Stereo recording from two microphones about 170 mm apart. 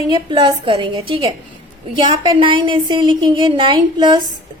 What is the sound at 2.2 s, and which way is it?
Speech, 30° right (ahead or behind).